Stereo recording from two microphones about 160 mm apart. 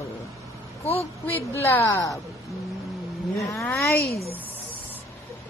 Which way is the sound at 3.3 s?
Centre (ahead or behind).